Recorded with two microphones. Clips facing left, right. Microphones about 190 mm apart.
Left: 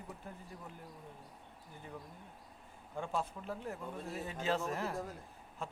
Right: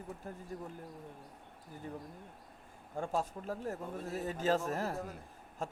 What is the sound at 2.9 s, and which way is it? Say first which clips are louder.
A man's voice: right 3 dB; 45° right (ahead or behind).